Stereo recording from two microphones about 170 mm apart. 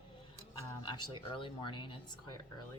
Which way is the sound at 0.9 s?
30° left (ahead or behind).